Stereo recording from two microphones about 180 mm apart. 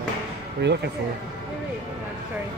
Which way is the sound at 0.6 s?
70° right (ahead or behind).